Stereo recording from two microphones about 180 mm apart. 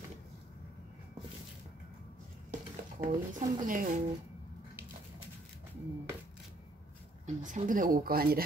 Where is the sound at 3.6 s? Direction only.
50° right (ahead or behind).